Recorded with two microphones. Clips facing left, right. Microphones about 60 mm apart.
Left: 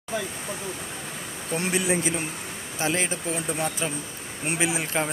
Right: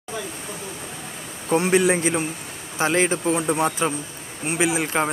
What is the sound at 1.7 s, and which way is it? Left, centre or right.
Speech, right.